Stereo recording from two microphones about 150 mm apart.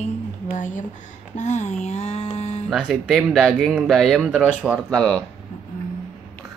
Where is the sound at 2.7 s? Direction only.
Centre (ahead or behind).